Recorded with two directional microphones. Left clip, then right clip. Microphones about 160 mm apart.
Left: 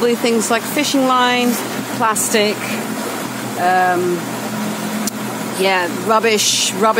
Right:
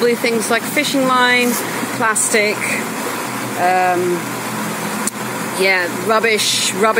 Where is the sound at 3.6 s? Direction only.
15° left (ahead or behind).